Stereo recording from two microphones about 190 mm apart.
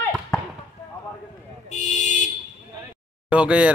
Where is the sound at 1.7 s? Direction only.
40° left (ahead or behind).